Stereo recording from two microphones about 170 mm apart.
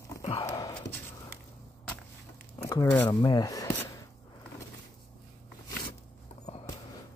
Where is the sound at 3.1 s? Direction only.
25° left (ahead or behind).